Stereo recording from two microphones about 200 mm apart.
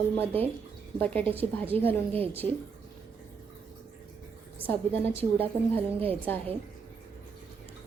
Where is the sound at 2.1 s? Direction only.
30° right (ahead or behind).